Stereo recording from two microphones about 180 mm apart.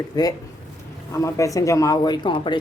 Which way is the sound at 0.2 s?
20° left (ahead or behind).